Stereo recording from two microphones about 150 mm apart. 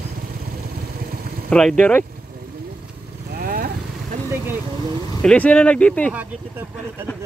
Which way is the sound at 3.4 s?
80° right.